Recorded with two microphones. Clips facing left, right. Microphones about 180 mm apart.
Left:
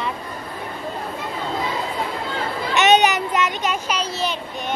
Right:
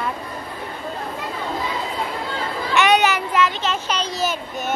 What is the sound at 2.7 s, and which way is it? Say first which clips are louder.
Child singing: left 1 dB; 20° left (ahead or behind).